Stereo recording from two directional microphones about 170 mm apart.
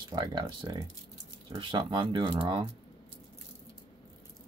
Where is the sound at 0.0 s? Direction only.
25° right (ahead or behind).